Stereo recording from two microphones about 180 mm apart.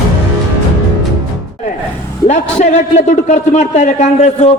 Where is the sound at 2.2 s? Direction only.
40° left (ahead or behind).